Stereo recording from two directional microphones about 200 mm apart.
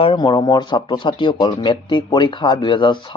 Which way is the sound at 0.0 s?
25° left (ahead or behind).